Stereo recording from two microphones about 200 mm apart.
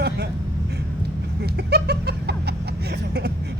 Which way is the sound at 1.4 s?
55° right (ahead or behind).